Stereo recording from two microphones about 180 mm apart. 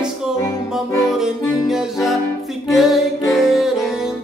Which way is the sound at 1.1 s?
5° right (ahead or behind).